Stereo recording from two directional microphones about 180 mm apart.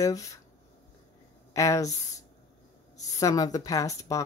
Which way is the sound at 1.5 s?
20° left (ahead or behind).